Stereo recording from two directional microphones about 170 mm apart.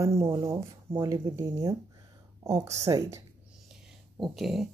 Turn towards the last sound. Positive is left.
turn(degrees=0)  # may be behind; listen again after turning